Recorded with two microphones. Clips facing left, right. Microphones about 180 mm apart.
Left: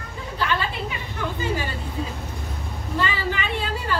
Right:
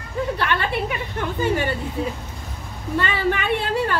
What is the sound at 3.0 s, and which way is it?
Speech, 60° right (ahead or behind).